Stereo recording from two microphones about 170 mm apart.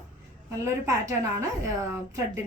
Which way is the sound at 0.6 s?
20° right (ahead or behind).